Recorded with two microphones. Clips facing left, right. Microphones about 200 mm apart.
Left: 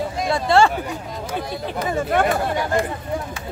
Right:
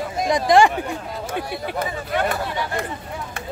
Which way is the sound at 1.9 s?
45° left (ahead or behind).